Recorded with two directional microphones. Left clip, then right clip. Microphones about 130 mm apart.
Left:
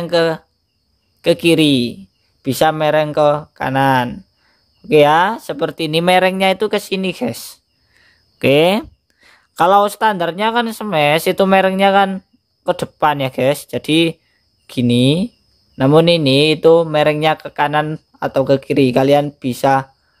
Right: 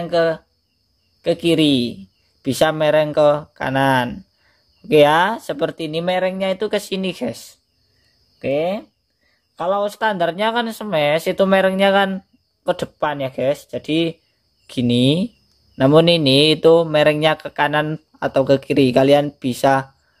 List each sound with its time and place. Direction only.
0.0 s speech: 30° left (ahead or behind); by 5.8 s 15° left (ahead or behind)
5.8 s speech: 40° left (ahead or behind)
6.6 s speech: 25° left (ahead or behind)
8.4 s a sound: 70° left (ahead or behind)
9.7 s speech: 45° left (ahead or behind)
9.9 s speech: 20° left (ahead or behind)
13.0 s speech: 30° left (ahead or behind)
14.7 s speech: 15° left (ahead or behind)